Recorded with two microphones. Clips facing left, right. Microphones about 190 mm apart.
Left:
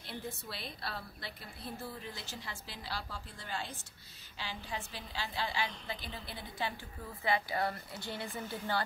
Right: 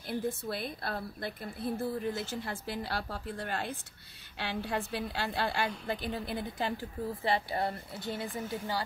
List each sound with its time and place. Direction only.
0.0 s a woman's voice: 50° right (ahead or behind)
7.3 s speech: 25° right (ahead or behind)
8.4 s a woman's voice: 10° right (ahead or behind)